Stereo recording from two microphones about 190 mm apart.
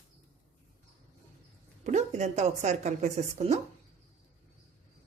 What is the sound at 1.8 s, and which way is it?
A woman's voice, 35° right (ahead or behind).